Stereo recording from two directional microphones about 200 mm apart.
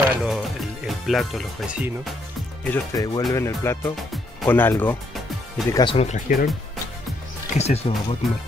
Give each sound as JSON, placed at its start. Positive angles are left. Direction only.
{"t": 0.0, "sound": "music", "side_deg": -5}
{"t": 2.6, "sound": "speech", "side_deg": 15}
{"t": 5.9, "sound": "speech", "side_deg": 40}
{"t": 7.5, "sound": "speech", "side_deg": 30}